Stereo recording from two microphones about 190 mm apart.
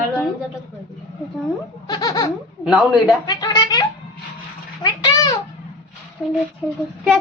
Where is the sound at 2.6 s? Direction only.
5° right (ahead or behind).